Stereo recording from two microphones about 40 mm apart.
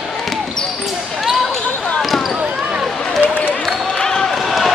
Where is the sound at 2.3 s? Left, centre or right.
Right.